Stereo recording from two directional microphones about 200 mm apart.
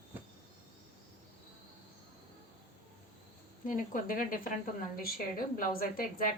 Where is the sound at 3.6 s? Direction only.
40° left (ahead or behind).